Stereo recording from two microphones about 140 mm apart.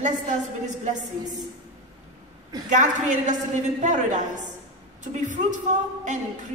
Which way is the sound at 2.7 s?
60° right (ahead or behind).